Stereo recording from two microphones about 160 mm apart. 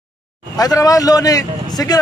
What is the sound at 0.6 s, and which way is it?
A man's voice, 20° left (ahead or behind).